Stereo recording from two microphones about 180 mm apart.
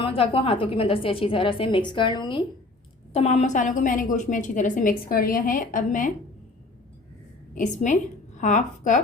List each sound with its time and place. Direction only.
0.0 s a woman's voice: 30° left (ahead or behind); by 6.1 s 50° left (ahead or behind)
7.5 s a woman's voice: 45° left (ahead or behind)